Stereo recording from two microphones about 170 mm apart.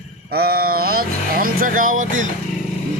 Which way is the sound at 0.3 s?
65° right (ahead or behind).